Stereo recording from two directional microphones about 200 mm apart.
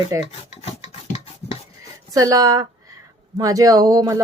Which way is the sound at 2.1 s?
15° right (ahead or behind).